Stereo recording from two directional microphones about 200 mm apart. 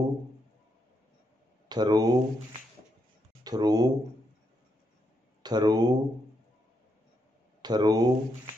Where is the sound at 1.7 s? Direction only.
20° right (ahead or behind).